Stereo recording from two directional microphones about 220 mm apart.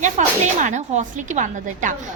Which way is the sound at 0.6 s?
35° right (ahead or behind).